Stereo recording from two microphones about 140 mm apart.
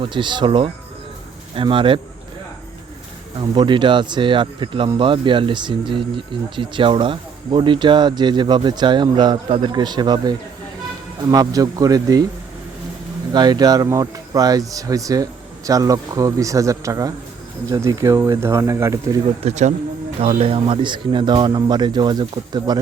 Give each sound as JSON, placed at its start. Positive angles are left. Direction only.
{"t": 0.0, "sound": "speech", "side_deg": -35}
{"t": 3.3, "sound": "speech", "side_deg": -35}
{"t": 13.3, "sound": "speech", "side_deg": -30}
{"t": 19.2, "sound": "speech", "side_deg": -55}
{"t": 20.4, "sound": "speech", "side_deg": -40}